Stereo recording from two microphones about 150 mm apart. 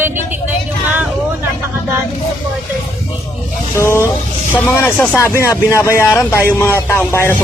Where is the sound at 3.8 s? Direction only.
20° left (ahead or behind).